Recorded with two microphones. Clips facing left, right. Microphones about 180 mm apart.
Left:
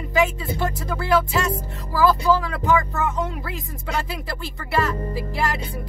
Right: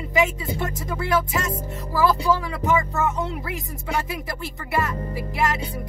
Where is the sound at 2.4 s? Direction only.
20° right (ahead or behind).